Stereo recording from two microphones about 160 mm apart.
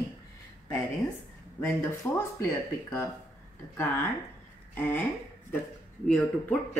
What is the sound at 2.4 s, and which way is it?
Speech, 15° left (ahead or behind).